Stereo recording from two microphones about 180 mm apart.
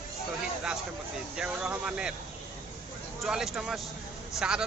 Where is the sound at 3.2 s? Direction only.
Centre (ahead or behind).